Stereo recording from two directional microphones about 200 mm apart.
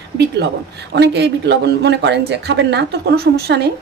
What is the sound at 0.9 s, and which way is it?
A woman's voice, 60° right (ahead or behind).